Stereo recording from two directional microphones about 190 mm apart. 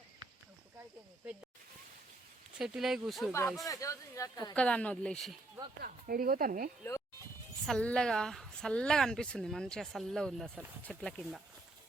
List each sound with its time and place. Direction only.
2.6 s speech: centre (ahead or behind)
3.6 s speech: 15° left (ahead or behind)
4.5 s speech: 5° left (ahead or behind)
5.8 s speech: 50° right (ahead or behind)
7.7 s speech: 5° left (ahead or behind)